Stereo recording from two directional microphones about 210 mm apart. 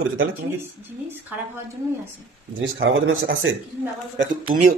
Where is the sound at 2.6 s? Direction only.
60° right (ahead or behind).